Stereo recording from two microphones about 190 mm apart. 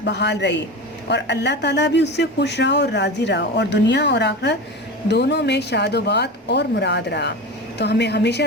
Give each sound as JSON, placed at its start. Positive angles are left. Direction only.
{"t": 0.0, "sound": "a man's voice", "side_deg": 65}